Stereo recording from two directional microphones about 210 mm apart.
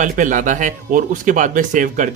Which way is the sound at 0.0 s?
35° right (ahead or behind).